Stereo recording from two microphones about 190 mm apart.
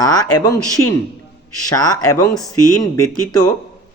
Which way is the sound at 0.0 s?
20° left (ahead or behind).